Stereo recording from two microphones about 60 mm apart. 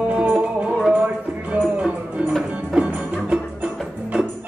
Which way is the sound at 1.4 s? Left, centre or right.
Right.